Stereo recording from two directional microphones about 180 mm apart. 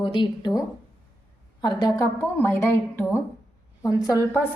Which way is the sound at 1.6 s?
25° left (ahead or behind).